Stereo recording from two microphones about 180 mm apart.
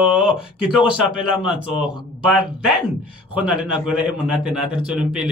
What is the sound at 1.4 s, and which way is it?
Speech, 30° left (ahead or behind).